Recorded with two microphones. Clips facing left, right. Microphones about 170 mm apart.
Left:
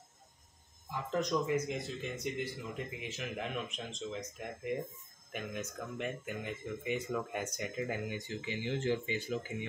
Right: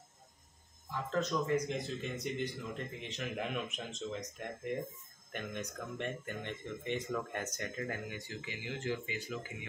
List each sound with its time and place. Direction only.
0.8 s speech: 15° left (ahead or behind)